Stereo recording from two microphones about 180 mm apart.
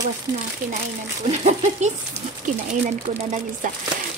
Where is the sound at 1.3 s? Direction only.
40° right (ahead or behind).